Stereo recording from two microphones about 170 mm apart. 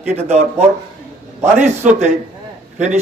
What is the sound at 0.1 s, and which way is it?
Speech, 40° right (ahead or behind).